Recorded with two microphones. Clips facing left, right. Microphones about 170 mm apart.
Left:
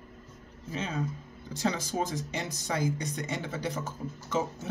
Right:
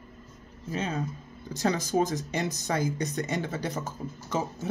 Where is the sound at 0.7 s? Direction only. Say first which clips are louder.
Right 2 dB; 45° right (ahead or behind).